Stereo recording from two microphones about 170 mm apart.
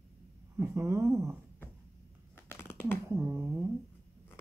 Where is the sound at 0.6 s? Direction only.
15° right (ahead or behind).